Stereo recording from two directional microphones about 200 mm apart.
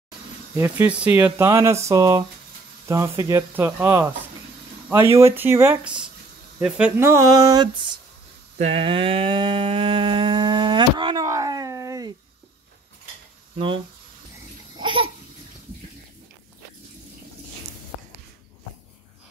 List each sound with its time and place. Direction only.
0.6 s speech: 10° right (ahead or behind)
8.5 s a sound: 30° right (ahead or behind)
14.8 s laughter: 25° right (ahead or behind)